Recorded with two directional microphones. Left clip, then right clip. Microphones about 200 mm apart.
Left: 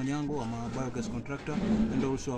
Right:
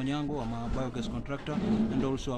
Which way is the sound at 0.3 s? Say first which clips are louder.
Even; 5° right (ahead or behind).